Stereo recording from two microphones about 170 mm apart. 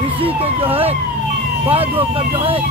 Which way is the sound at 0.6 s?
35° right (ahead or behind).